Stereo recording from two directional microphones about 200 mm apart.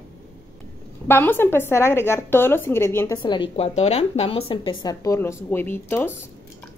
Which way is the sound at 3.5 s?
30° left (ahead or behind).